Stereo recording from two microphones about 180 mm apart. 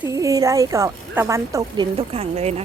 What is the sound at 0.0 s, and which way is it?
Speech, 20° right (ahead or behind).